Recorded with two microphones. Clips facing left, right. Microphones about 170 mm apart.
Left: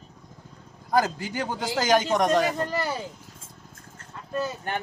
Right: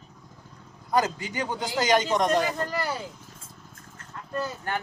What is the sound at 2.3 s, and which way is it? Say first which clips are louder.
Speech: left 2 dB; 20° left (ahead or behind).